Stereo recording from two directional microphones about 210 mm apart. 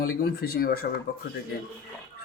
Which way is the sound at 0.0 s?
45° left (ahead or behind).